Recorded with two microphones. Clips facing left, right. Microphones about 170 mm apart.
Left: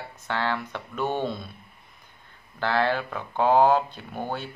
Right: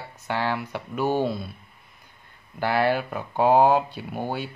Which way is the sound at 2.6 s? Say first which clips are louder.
Right 2 dB; 10° right (ahead or behind).